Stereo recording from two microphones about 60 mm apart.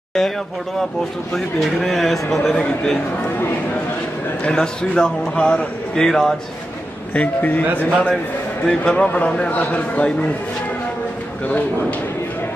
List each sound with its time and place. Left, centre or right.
1.3 s a man's voice: centre
4.5 s a man's voice: centre
7.2 s a man's voice: left
8.6 s a man's voice: centre